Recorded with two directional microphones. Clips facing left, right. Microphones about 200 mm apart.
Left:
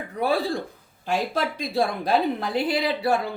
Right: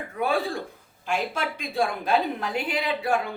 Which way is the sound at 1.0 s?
35° left (ahead or behind).